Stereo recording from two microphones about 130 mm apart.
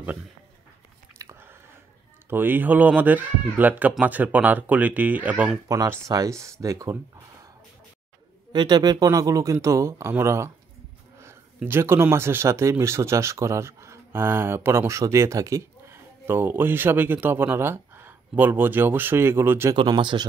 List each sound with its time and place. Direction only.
1.1 s biting: 20° right (ahead or behind)
2.2 s speech: 15° right (ahead or behind)
5.7 s speech: 25° right (ahead or behind)
8.5 s speech: 35° right (ahead or behind); by 19.7 s 20° right (ahead or behind)
19.7 s speech: 35° right (ahead or behind)